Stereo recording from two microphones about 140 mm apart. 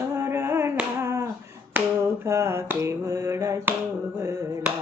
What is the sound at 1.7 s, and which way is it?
Finger snapping, 10° right (ahead or behind).